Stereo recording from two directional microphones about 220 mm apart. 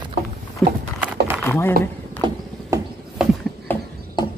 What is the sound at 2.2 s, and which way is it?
Horse, 15° right (ahead or behind).